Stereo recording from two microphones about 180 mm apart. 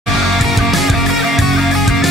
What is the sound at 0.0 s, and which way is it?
Music, centre (ahead or behind).